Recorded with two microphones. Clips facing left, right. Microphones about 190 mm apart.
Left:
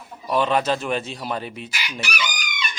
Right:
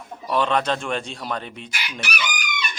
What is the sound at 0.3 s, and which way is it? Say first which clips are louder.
Speech: left 1 dB; 5° left (ahead or behind).